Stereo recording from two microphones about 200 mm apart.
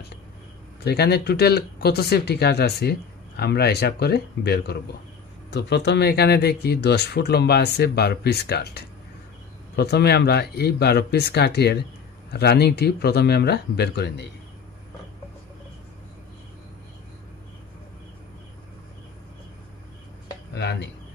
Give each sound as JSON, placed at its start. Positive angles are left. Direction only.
{"t": 0.8, "sound": "speech", "side_deg": 55}
{"t": 20.5, "sound": "speech", "side_deg": 60}